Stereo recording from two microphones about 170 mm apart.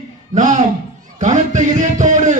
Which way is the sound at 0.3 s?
45° right (ahead or behind).